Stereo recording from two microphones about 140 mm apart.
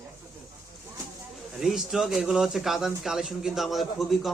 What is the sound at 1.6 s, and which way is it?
Speech, centre (ahead or behind).